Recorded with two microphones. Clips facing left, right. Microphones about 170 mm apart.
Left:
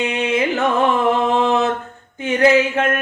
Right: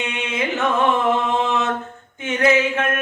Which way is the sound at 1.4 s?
35° left (ahead or behind).